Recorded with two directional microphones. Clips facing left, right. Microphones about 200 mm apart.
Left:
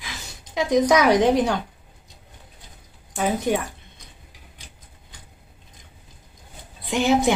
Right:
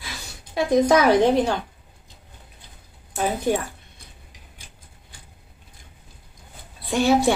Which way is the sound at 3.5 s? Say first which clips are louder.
Right 1 dB; 15° left (ahead or behind).